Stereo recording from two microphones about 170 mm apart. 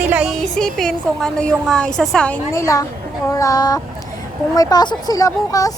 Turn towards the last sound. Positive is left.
turn(degrees=20)  # may be behind; listen again after turning